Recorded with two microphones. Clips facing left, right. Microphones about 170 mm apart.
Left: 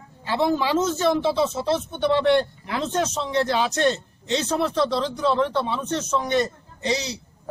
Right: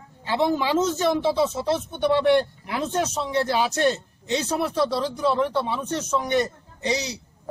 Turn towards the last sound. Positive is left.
turn(degrees=-15)  # may be behind; listen again after turning